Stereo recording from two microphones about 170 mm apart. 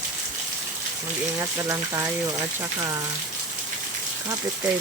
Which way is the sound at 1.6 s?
20° right (ahead or behind).